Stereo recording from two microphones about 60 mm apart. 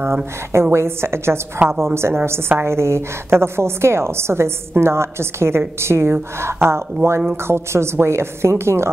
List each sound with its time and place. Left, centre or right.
0.0 s a woman's voice: right
1.6 s a woman's voice: right
2.0 s a woman's voice: right